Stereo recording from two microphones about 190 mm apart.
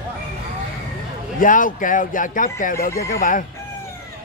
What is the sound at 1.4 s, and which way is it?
Speech, 45° left (ahead or behind).